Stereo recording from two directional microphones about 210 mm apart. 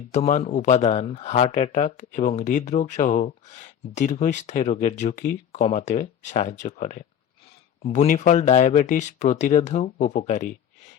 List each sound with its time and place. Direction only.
0.1 s speech: 35° left (ahead or behind)